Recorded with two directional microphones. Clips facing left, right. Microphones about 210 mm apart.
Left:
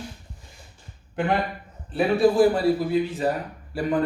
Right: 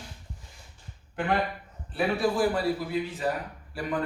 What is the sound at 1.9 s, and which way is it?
A man's voice, 25° left (ahead or behind).